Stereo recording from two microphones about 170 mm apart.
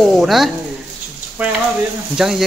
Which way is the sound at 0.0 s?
Centre (ahead or behind).